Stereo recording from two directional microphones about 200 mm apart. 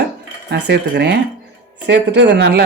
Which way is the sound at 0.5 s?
60° right (ahead or behind).